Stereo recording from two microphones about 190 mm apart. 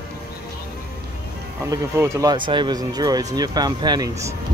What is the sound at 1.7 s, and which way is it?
Speech, 15° right (ahead or behind).